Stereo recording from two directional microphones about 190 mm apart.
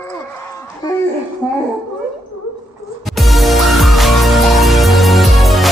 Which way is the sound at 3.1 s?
Centre (ahead or behind).